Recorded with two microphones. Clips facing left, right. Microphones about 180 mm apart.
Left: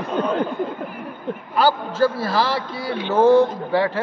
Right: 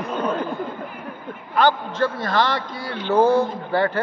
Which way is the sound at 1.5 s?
5° left (ahead or behind).